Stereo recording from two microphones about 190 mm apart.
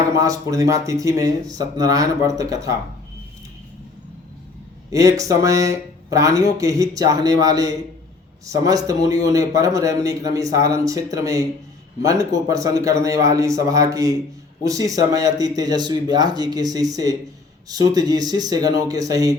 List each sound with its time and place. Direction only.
0.2 s a man's voice: 15° right (ahead or behind)
4.9 s a man's voice: 15° right (ahead or behind)